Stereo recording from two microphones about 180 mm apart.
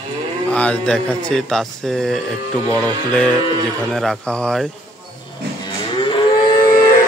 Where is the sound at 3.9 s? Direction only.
Centre (ahead or behind).